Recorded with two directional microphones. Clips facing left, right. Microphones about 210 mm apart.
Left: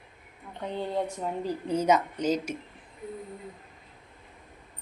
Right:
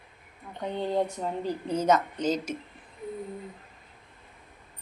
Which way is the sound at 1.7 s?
10° left (ahead or behind).